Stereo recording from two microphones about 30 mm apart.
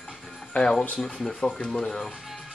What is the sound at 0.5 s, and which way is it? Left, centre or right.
Speech, left.